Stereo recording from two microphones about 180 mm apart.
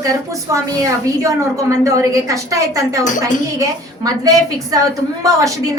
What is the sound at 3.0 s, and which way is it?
Speech, 45° left (ahead or behind).